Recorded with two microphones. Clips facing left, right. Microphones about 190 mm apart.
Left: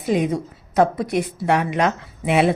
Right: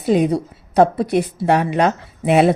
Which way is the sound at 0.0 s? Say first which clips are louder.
Right 4 dB; 35° right (ahead or behind).